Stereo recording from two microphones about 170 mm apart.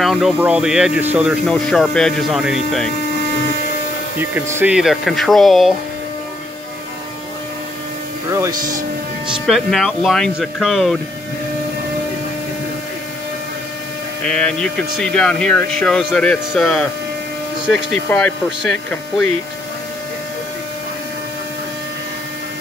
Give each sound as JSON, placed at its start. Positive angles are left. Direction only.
{"t": 0.0, "sound": "music", "side_deg": 0}
{"t": 0.4, "sound": "speech", "side_deg": -5}
{"t": 4.2, "sound": "speech", "side_deg": -10}
{"t": 8.3, "sound": "speech", "side_deg": -20}
{"t": 9.5, "sound": "speech", "side_deg": 0}
{"t": 14.2, "sound": "speech", "side_deg": 5}
{"t": 18.1, "sound": "speech", "side_deg": 5}